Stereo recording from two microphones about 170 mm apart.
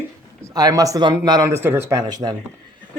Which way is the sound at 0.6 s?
20° right (ahead or behind).